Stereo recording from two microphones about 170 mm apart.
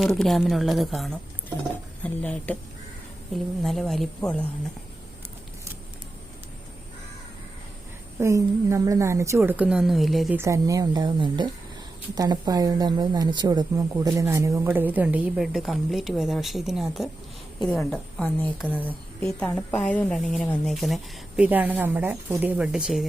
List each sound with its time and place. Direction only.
0.2 s a woman's voice: centre (ahead or behind)
8.2 s a woman's voice: 15° right (ahead or behind); by 10.3 s centre (ahead or behind)
10.3 s a woman's voice: 15° right (ahead or behind); by 23.0 s centre (ahead or behind)